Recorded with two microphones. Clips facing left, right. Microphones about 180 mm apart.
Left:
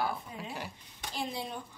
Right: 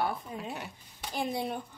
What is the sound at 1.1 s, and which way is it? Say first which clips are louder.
Speech: right 5 dB; 55° right (ahead or behind).